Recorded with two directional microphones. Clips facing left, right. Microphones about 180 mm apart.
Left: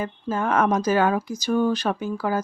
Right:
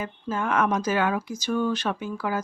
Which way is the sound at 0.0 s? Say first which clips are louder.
Left 3 dB; 40° left (ahead or behind).